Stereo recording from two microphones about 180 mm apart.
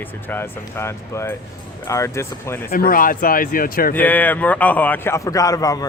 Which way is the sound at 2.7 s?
55° left (ahead or behind).